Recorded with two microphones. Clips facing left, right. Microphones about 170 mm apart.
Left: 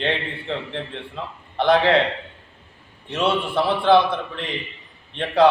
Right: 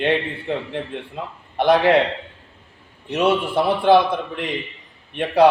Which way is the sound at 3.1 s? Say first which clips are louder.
Right 3 dB; 15° right (ahead or behind).